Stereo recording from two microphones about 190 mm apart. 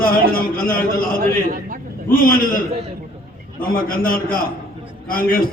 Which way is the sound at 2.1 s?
50° left (ahead or behind).